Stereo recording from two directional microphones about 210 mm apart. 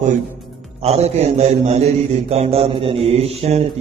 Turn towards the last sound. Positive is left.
turn(degrees=-30)  # may be behind; listen again after turning